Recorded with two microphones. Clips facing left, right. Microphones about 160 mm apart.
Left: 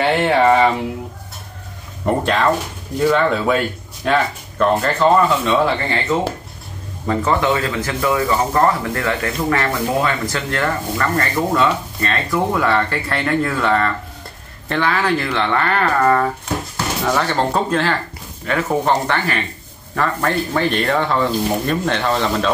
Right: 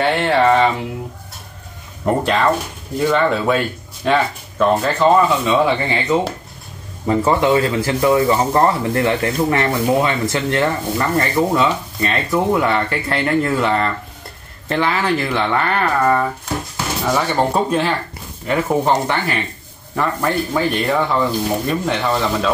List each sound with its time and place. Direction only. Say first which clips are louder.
0.0 s speech: left 1 dB; 5° left (ahead or behind)
2.0 s speech: right 1 dB; centre (ahead or behind)
7.2 s speech: right 3 dB; 20° right (ahead or behind)
15.8 s speech: left 2 dB; 10° right (ahead or behind)